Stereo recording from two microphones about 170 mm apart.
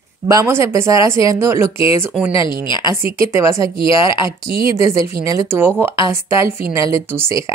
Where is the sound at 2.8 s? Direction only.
15° right (ahead or behind).